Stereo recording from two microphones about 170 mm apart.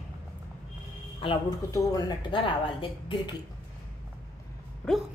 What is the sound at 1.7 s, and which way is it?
Speech, 20° left (ahead or behind).